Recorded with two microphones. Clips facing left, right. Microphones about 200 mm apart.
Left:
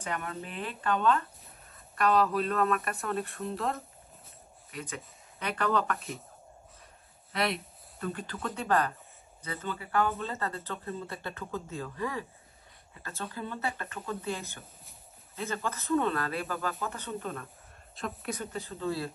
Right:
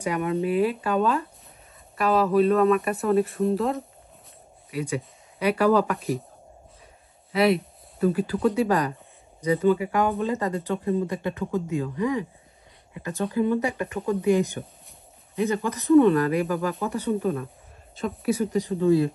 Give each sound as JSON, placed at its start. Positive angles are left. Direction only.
{"t": 0.0, "sound": "speech", "side_deg": -10}
{"t": 7.3, "sound": "speech", "side_deg": -5}
{"t": 17.9, "sound": "speech", "side_deg": -5}